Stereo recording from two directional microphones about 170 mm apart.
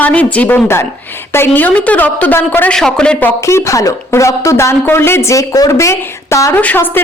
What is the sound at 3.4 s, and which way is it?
A woman's voice, 15° left (ahead or behind).